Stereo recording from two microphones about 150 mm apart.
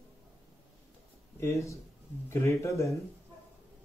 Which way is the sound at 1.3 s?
20° left (ahead or behind).